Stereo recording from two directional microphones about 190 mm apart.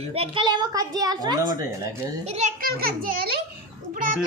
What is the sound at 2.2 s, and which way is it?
Speech, 35° right (ahead or behind).